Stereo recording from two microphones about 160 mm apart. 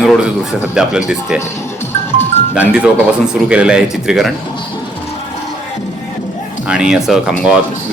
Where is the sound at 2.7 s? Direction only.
5° right (ahead or behind).